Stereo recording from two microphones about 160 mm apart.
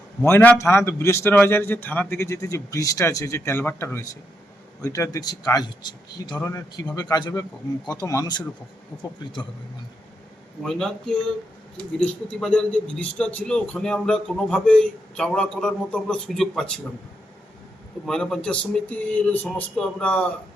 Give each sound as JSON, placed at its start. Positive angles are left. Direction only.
{"t": 0.2, "sound": "a man's voice", "side_deg": 10}
{"t": 10.6, "sound": "speech", "side_deg": 5}
{"t": 18.0, "sound": "speech", "side_deg": 5}